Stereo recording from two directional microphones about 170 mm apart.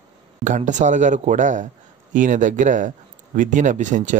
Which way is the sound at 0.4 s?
45° right (ahead or behind).